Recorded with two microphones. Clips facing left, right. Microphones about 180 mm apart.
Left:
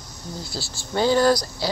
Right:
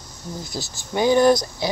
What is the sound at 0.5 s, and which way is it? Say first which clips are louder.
Speech: even; 15° right (ahead or behind).